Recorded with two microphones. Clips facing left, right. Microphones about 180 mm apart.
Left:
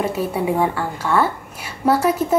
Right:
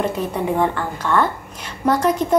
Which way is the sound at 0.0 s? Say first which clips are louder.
Left 1 dB; 10° left (ahead or behind).